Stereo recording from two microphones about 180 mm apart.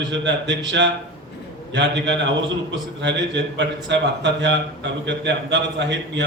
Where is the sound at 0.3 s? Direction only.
80° right.